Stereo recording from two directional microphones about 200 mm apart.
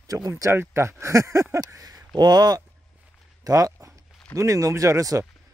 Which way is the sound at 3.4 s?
15° right (ahead or behind).